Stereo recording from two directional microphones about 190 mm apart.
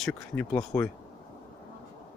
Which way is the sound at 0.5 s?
15° left (ahead or behind).